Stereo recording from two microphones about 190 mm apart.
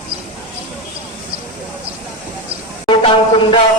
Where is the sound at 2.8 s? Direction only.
25° left (ahead or behind).